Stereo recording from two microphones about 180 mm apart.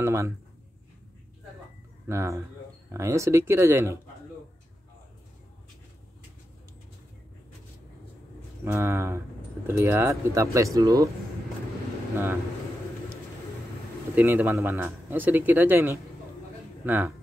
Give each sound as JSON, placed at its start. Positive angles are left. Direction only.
{"t": 0.0, "sound": "speech", "side_deg": -15}
{"t": 2.0, "sound": "speech", "side_deg": -15}
{"t": 8.6, "sound": "speech", "side_deg": -15}
{"t": 14.1, "sound": "speech", "side_deg": -10}